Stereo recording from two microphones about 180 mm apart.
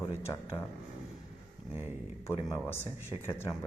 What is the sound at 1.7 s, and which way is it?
Speech, 10° right (ahead or behind).